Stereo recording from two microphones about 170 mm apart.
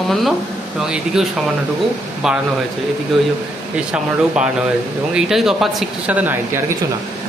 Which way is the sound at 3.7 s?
5° right (ahead or behind).